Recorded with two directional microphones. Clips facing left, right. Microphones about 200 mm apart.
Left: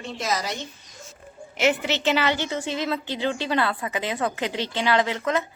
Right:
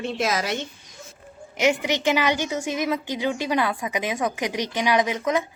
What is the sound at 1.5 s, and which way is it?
A woman's voice, 15° right (ahead or behind).